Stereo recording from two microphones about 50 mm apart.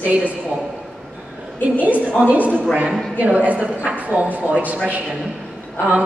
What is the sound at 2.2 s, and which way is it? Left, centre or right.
A woman's voice, right.